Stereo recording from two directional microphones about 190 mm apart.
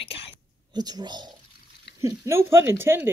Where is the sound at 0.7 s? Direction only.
20° right (ahead or behind).